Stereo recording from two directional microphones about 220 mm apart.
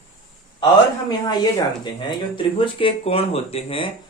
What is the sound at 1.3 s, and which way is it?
Speech, 20° left (ahead or behind).